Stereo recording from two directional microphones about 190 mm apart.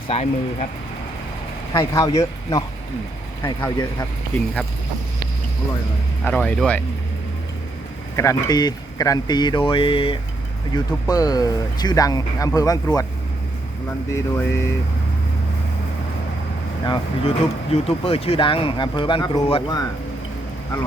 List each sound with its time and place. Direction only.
0.1 s speech: 35° left (ahead or behind)
1.8 s speech: 15° left (ahead or behind)
6.2 s speech: 5° left (ahead or behind)
8.1 s speech: 15° left (ahead or behind)
14.1 s speech: 15° left (ahead or behind)
16.8 s speech: 25° left (ahead or behind)